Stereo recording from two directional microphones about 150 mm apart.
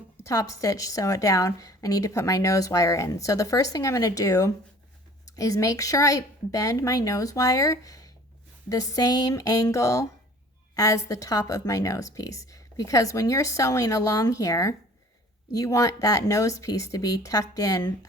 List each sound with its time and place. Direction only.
0.2 s a woman's voice: 20° left (ahead or behind)